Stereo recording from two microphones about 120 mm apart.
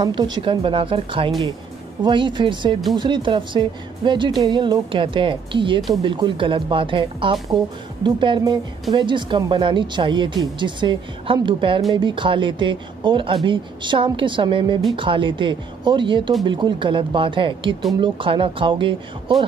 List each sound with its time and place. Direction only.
0.0 s speech: 35° right (ahead or behind)